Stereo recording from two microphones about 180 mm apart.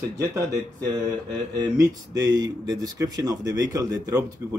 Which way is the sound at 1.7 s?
20° right (ahead or behind).